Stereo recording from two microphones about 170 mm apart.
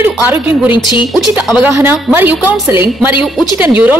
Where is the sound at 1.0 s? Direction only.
Centre (ahead or behind).